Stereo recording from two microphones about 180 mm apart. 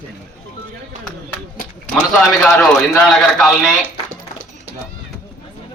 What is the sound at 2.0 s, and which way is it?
A man's voice, 5° left (ahead or behind).